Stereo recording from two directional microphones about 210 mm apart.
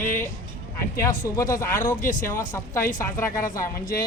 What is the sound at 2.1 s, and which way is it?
Speech, 40° left (ahead or behind).